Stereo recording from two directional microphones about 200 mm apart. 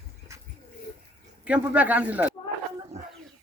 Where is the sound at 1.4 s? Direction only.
5° right (ahead or behind).